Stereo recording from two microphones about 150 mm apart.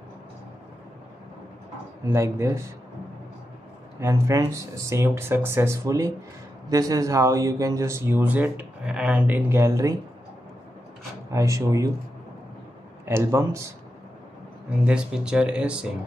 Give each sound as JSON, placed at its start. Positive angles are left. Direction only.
{"t": 2.0, "sound": "speech", "side_deg": -20}
{"t": 4.0, "sound": "speech", "side_deg": -20}
{"t": 11.3, "sound": "speech", "side_deg": -20}
{"t": 13.0, "sound": "speech", "side_deg": -20}
{"t": 14.9, "sound": "speech", "side_deg": -5}